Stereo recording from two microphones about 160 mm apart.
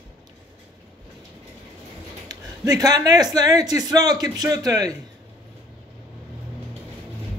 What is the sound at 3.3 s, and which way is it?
Speech, 25° right (ahead or behind).